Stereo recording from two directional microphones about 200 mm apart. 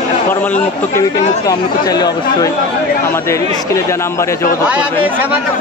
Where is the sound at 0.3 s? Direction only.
10° left (ahead or behind).